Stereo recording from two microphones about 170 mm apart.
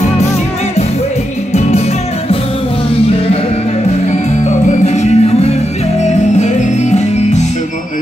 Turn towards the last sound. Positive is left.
turn(degrees=40)  # may be behind; listen again after turning